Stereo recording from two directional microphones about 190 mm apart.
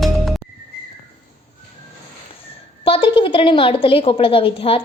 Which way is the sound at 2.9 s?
30° left (ahead or behind).